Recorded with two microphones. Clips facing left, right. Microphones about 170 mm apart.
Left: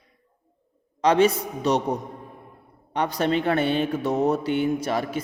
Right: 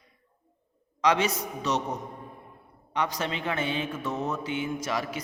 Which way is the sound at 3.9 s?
40° left (ahead or behind).